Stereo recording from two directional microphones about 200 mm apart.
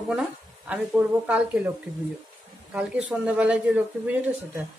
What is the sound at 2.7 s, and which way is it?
Speech, 5° right (ahead or behind).